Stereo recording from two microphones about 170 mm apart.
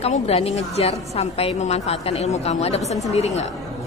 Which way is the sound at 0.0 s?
35° left (ahead or behind).